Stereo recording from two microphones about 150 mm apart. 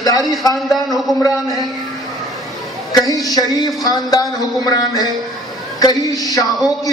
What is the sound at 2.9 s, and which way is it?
Speech, 25° left (ahead or behind).